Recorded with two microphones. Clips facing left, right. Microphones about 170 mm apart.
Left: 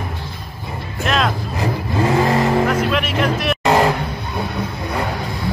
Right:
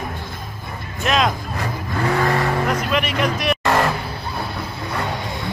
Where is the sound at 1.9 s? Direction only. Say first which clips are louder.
Left 3 dB; 20° left (ahead or behind).